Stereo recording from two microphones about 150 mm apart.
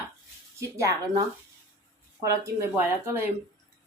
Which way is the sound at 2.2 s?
20° right (ahead or behind).